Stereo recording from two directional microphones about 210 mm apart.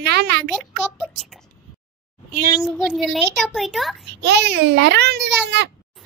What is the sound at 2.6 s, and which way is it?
A child's voice, centre (ahead or behind).